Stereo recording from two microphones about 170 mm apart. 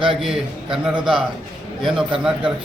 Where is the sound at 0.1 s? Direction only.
Centre (ahead or behind).